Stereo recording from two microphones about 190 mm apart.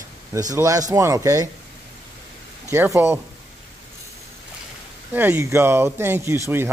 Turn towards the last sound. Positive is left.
turn(degrees=-15)  # may be behind; listen again after turning